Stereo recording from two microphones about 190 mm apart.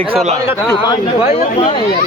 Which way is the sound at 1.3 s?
35° left (ahead or behind).